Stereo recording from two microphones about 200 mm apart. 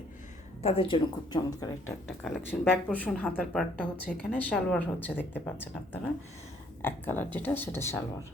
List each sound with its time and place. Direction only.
0.6 s speech: 25° left (ahead or behind)
2.0 s a woman's voice: centre (ahead or behind)